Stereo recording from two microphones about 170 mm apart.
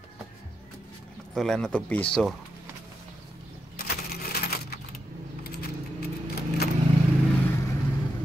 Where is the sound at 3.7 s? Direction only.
65° left (ahead or behind).